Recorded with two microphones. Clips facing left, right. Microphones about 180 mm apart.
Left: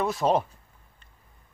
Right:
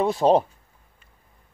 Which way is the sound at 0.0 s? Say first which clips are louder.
Right 5 dB; 30° right (ahead or behind).